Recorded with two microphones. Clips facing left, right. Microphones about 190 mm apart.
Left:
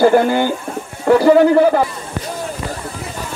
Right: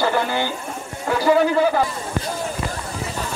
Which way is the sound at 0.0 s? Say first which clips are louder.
Left 9 dB; 50° left (ahead or behind).